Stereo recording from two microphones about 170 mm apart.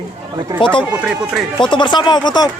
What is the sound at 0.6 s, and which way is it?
Speech, 30° left (ahead or behind).